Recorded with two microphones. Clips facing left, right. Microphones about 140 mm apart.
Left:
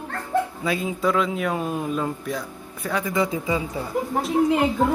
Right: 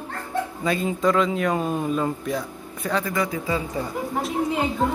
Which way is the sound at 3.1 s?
25° left (ahead or behind).